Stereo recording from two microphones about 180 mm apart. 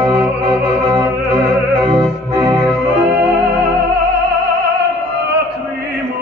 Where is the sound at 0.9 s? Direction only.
10° right (ahead or behind).